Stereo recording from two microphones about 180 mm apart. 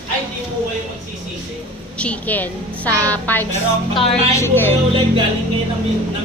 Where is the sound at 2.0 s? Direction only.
10° left (ahead or behind).